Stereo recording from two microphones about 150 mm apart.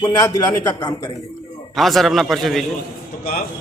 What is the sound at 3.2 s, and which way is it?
Speech, 70° left (ahead or behind).